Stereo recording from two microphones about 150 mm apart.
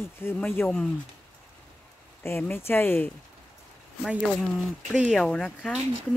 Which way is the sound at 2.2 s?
15° left (ahead or behind).